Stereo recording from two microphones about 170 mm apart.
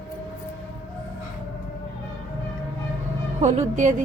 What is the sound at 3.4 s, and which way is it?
Speech, 45° right (ahead or behind).